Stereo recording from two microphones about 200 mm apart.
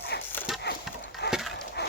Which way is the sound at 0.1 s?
55° left (ahead or behind).